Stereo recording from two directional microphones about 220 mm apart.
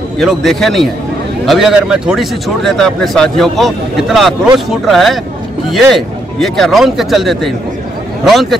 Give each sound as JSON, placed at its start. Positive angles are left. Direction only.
{"t": 0.2, "sound": "speech", "side_deg": 0}